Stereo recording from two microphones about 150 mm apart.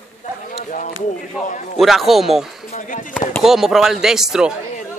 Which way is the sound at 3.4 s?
Centre (ahead or behind).